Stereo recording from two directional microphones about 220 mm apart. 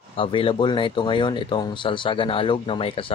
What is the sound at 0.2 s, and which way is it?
Speech, 25° left (ahead or behind).